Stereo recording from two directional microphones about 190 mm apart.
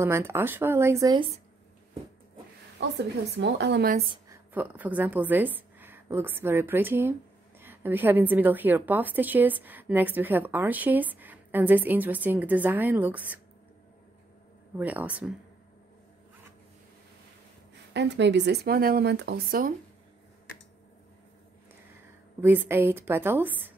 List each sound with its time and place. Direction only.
0.0 s a woman's voice: 15° right (ahead or behind)
3.0 s speech: 65° right (ahead or behind)
4.3 s a woman's voice: 10° right (ahead or behind)
14.8 s a woman's voice: 10° right (ahead or behind)
17.9 s speech: 65° right (ahead or behind); by 19.7 s 50° right (ahead or behind)
22.4 s a woman's voice: 10° right (ahead or behind)